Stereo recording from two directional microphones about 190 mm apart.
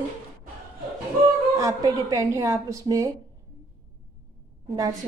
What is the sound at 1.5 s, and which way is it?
Speech, 15° right (ahead or behind).